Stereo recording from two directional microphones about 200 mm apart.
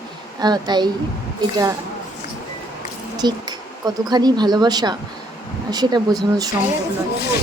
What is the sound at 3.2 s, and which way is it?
Speech, 20° right (ahead or behind).